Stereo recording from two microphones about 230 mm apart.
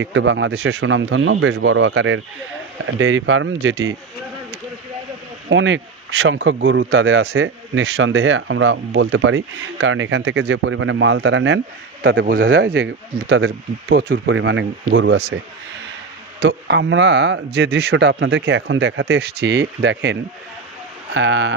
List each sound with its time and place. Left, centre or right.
0.0 s speech: right
5.5 s speech: right
12.0 s speech: right
16.4 s speech: right